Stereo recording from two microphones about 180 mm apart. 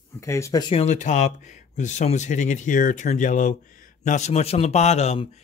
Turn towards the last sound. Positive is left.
turn(degrees=35)  # may be behind; listen again after turning